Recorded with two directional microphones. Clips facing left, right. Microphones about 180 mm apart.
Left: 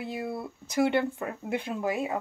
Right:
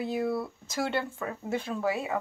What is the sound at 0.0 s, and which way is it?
Speech, 5° left (ahead or behind).